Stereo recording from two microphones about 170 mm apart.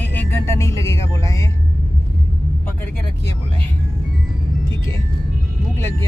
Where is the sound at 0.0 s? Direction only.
10° left (ahead or behind).